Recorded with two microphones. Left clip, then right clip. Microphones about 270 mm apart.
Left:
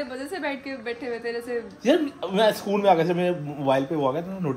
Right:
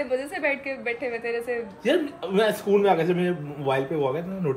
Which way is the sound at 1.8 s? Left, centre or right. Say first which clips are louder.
Left 3 dB; left.